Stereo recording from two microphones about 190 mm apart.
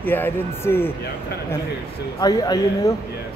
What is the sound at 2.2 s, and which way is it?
Speech, 20° left (ahead or behind).